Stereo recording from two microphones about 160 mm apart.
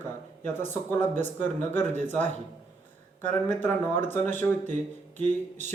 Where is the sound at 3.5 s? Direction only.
15° left (ahead or behind).